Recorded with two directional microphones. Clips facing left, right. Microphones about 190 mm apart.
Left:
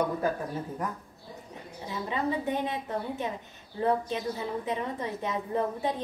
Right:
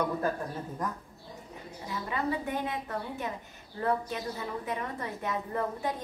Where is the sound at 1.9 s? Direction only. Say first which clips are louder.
Left 2 dB; 25° left (ahead or behind).